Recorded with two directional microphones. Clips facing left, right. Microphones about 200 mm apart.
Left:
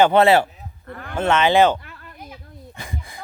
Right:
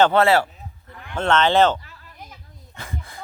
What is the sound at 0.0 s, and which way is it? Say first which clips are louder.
Speech: left 2 dB; 20° left (ahead or behind).